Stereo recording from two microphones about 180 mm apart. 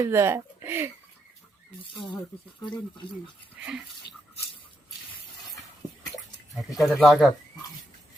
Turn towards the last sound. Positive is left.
turn(degrees=0)  # may be behind; listen again after turning